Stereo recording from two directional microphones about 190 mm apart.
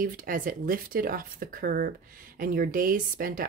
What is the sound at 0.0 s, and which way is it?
Speech, 45° right (ahead or behind).